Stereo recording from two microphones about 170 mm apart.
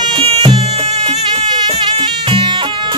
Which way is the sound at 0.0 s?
25° right (ahead or behind).